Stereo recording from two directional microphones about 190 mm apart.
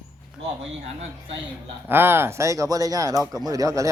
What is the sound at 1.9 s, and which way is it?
A man's voice, 10° right (ahead or behind).